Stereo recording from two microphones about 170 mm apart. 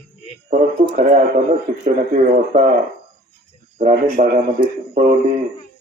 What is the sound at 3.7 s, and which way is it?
Speech, 45° right (ahead or behind).